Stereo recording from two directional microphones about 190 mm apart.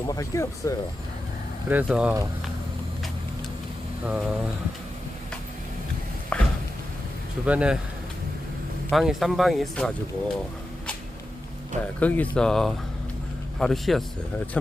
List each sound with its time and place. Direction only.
0.1 s speech: 15° left (ahead or behind)
1.7 s speech: 5° right (ahead or behind)
4.0 s speech: 5° right (ahead or behind)
6.3 s a sound: 5° left (ahead or behind)
7.4 s speech: 5° right (ahead or behind)
8.9 s speech: centre (ahead or behind)
11.9 s speech: 10° left (ahead or behind)